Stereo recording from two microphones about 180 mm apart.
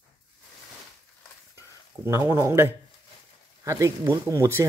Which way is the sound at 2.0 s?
15° right (ahead or behind).